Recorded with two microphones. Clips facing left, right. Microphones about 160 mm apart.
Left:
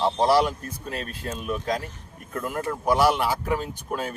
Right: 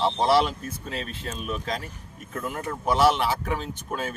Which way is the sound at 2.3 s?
Centre (ahead or behind).